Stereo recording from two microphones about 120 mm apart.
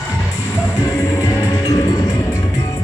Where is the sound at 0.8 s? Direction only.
30° left (ahead or behind).